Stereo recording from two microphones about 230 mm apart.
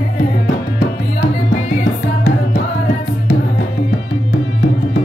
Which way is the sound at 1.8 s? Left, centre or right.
Left.